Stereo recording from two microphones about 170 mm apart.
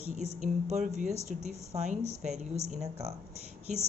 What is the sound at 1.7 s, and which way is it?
A woman's voice, 40° right (ahead or behind).